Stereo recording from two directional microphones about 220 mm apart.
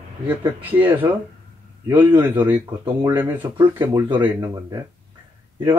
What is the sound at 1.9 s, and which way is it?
Speech, 20° right (ahead or behind).